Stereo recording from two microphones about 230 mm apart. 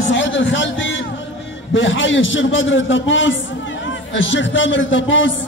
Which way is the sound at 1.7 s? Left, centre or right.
Left.